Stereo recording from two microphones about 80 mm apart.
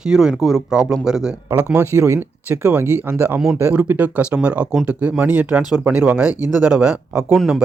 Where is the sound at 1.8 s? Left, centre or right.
Right.